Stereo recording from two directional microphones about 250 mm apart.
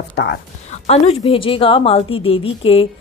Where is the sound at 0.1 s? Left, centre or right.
Left.